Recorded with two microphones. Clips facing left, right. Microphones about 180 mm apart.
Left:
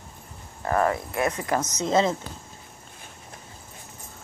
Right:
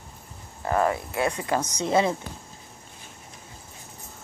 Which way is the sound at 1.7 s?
15° right (ahead or behind).